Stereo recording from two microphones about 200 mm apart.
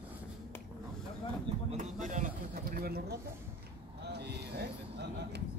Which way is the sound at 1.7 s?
40° right (ahead or behind).